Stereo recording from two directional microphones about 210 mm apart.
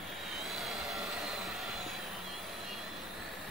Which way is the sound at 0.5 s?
Centre (ahead or behind).